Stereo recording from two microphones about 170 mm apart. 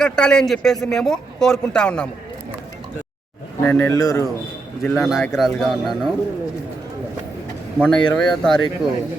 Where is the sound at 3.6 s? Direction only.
15° left (ahead or behind).